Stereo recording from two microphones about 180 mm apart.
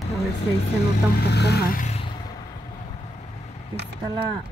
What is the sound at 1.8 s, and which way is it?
Vehicle, 40° left (ahead or behind).